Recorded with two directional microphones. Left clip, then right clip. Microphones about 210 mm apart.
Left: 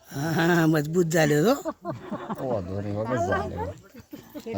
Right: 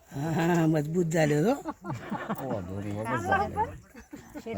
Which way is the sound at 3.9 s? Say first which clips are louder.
Left 2 dB; 5° right (ahead or behind).